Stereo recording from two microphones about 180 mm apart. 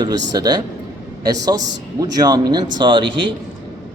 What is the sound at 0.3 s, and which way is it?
A man's voice, 25° right (ahead or behind).